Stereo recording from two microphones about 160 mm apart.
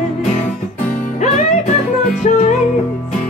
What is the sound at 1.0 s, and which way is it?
Music, 50° left (ahead or behind).